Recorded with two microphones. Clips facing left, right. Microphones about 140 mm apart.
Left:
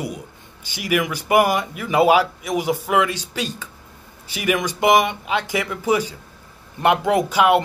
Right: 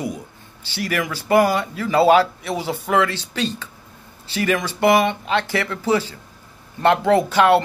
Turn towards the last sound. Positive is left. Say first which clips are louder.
# right 2 dB
turn(degrees=10)  # may be behind; listen again after turning